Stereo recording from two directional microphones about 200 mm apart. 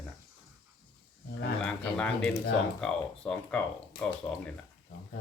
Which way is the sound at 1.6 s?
5° left (ahead or behind).